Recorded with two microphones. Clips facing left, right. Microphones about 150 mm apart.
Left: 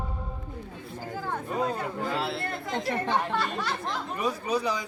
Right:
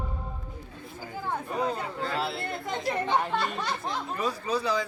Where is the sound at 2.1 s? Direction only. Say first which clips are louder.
Right 1 dB; centre (ahead or behind).